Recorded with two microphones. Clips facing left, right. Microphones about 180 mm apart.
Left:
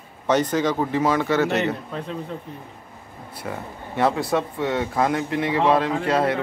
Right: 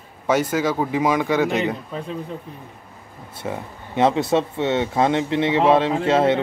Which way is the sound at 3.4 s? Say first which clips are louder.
Right 3 dB; 20° right (ahead or behind).